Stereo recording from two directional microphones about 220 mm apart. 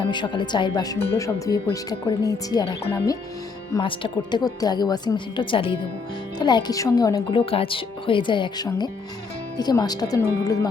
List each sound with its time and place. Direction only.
0.0 s speech: 20° left (ahead or behind)